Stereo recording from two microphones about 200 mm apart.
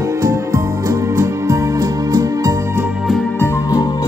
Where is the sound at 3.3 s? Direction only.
15° left (ahead or behind).